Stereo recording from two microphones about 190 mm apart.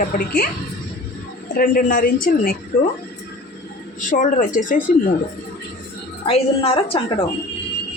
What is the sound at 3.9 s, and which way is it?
A woman's voice, 45° left (ahead or behind).